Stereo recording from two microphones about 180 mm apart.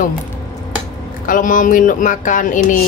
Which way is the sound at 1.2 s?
45° left (ahead or behind).